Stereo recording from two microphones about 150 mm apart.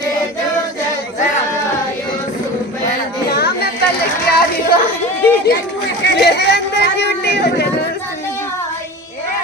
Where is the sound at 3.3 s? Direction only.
90° left.